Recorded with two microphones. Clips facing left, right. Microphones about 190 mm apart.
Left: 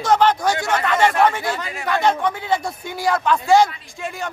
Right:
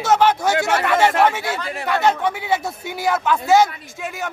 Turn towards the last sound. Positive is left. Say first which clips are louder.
# even
turn(degrees=-5)  # may be behind; listen again after turning